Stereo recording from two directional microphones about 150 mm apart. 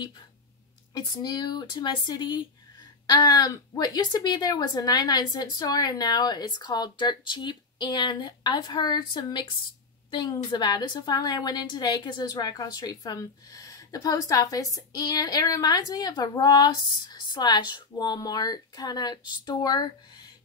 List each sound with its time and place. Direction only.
0.9 s a woman's voice: 25° left (ahead or behind)